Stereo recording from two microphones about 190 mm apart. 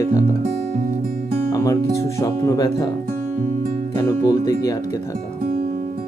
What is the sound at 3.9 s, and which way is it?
Speech, 20° left (ahead or behind).